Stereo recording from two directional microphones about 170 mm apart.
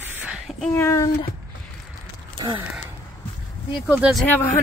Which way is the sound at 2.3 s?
30° right (ahead or behind).